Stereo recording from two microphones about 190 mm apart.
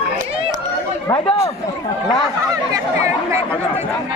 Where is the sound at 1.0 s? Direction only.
20° left (ahead or behind).